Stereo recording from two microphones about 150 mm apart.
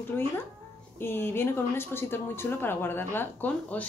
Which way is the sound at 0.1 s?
15° left (ahead or behind).